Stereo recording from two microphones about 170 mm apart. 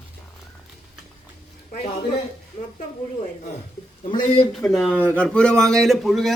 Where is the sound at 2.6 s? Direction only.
40° left (ahead or behind).